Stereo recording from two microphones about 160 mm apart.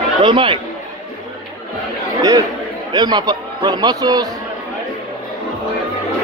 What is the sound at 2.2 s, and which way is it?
A man's voice, 20° right (ahead or behind).